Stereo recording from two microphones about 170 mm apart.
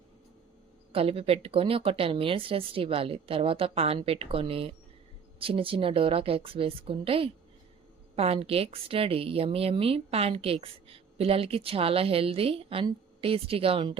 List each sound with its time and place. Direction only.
0.9 s a woman's voice: 35° right (ahead or behind)